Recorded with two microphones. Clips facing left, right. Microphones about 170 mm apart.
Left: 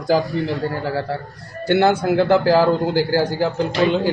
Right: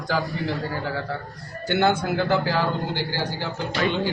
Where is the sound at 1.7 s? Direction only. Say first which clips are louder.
Left 6 dB; 35° left (ahead or behind).